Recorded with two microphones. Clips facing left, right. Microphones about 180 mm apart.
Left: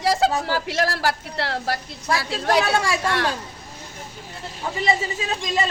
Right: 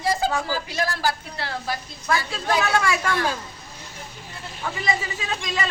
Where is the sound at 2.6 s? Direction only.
30° left (ahead or behind).